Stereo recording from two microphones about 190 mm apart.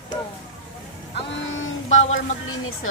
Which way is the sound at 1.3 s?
80° left.